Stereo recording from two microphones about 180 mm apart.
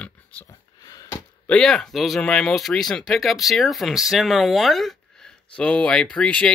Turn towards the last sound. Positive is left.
turn(degrees=5)  # may be behind; listen again after turning